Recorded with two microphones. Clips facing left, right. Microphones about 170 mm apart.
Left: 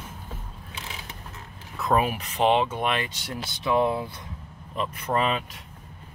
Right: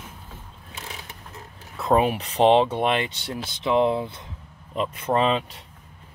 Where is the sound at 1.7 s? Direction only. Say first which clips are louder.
Right 3 dB; 30° right (ahead or behind).